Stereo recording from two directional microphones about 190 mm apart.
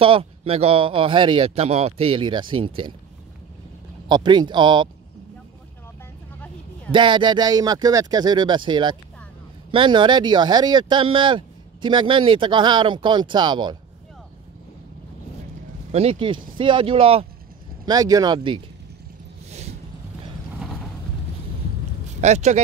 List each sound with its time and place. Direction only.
0.0 s speech: 30° right (ahead or behind)
4.1 s speech: 25° right (ahead or behind)
6.9 s speech: 25° right (ahead or behind)
15.9 s speech: 30° right (ahead or behind)
17.8 s speech: 20° right (ahead or behind)
19.5 s vehicle: 35° right (ahead or behind)
22.2 s speech: 35° right (ahead or behind)